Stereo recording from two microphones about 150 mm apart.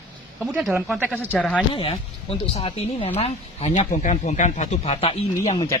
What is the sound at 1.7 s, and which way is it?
Speech, 40° left (ahead or behind).